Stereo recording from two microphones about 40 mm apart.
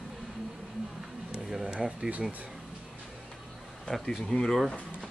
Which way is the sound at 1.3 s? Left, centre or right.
Centre.